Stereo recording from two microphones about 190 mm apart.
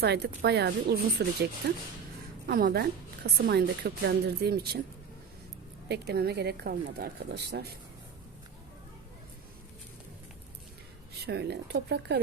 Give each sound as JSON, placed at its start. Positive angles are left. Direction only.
{"t": 0.0, "sound": "a woman's voice", "side_deg": -60}
{"t": 2.5, "sound": "a woman's voice", "side_deg": -50}
{"t": 5.9, "sound": "a woman's voice", "side_deg": -60}
{"t": 11.3, "sound": "a woman's voice", "side_deg": -60}